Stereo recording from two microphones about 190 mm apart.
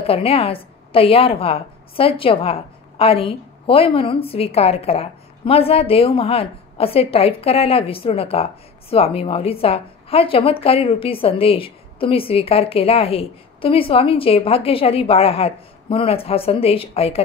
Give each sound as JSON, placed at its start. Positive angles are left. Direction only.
{"t": 0.0, "sound": "a woman's voice", "side_deg": 30}